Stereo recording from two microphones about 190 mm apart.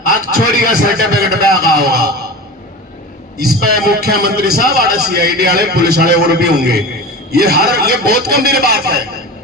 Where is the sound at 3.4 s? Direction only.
55° right (ahead or behind).